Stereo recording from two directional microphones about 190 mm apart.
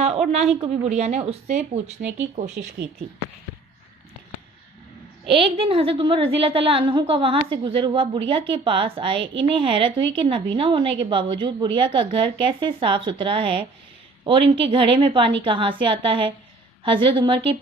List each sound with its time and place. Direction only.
0.0 s a woman's voice: 35° right (ahead or behind)
2.6 s speech: 55° right (ahead or behind)
5.3 s a woman's voice: 30° right (ahead or behind)
14.7 s a woman's voice: 25° right (ahead or behind)